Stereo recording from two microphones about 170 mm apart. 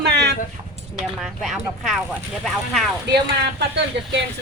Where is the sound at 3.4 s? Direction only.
85° right.